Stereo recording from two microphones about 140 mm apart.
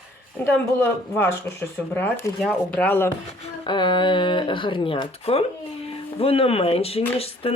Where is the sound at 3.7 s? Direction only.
35° left (ahead or behind).